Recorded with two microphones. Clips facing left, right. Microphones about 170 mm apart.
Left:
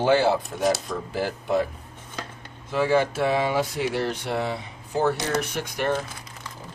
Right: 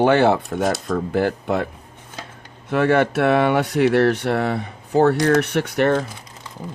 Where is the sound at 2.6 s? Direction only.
65° right (ahead or behind).